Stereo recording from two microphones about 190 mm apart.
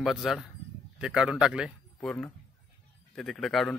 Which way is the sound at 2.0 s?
10° left (ahead or behind).